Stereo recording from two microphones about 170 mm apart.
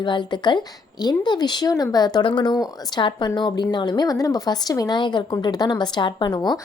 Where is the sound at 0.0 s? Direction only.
25° left (ahead or behind).